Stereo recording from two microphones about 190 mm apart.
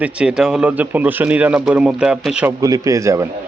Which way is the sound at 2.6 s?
15° right (ahead or behind).